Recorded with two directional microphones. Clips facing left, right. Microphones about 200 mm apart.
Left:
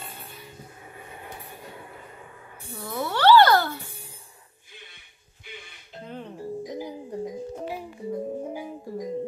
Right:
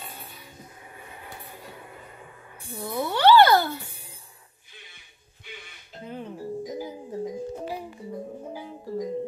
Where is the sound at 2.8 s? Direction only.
15° right (ahead or behind).